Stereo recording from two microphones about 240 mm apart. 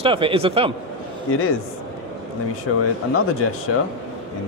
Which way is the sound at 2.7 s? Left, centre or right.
Left.